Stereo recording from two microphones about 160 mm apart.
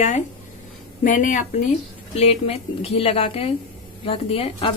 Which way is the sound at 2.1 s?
40° left (ahead or behind).